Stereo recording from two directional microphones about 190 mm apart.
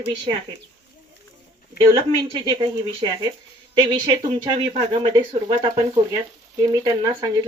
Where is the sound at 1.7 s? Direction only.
25° right (ahead or behind).